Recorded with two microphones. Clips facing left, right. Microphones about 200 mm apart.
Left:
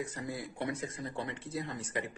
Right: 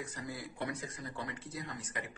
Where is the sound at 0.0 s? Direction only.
25° left (ahead or behind).